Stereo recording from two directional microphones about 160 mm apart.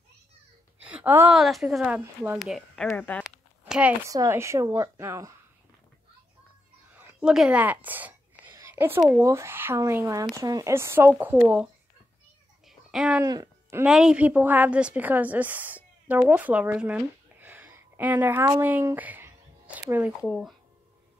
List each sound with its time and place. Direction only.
0.8 s a woman's voice: 10° right (ahead or behind)
1.4 s speech: centre (ahead or behind)
3.3 s a sound: 5° right (ahead or behind)
4.1 s speech: 20° right (ahead or behind)
6.9 s whispering: 5° right (ahead or behind)
9.1 s speech: 15° right (ahead or behind)
12.6 s a sound: 5° right (ahead or behind)
13.2 s speech: 20° right (ahead or behind)
13.8 s a woman's voice: 5° right (ahead or behind)